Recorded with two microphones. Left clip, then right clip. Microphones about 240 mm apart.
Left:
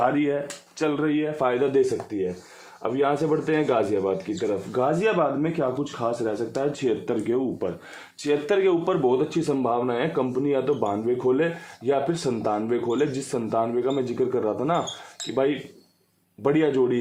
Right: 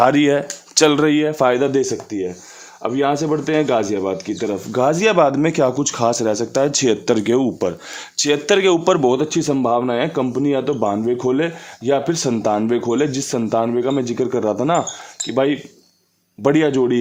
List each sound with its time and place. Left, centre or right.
0.0 s speech: right